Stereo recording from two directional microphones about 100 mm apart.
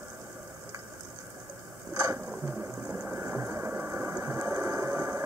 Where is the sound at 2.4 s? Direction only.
20° right (ahead or behind).